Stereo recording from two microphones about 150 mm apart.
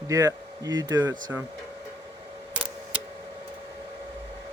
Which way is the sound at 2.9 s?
10° right (ahead or behind).